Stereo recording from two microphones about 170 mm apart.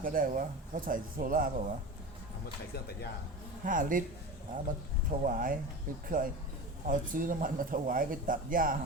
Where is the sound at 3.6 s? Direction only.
50° right (ahead or behind).